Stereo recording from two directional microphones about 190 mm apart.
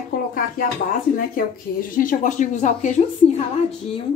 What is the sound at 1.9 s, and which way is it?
Speech, 45° left (ahead or behind).